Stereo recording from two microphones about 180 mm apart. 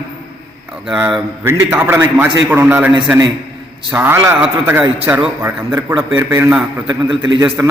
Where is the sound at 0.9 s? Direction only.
5° right (ahead or behind).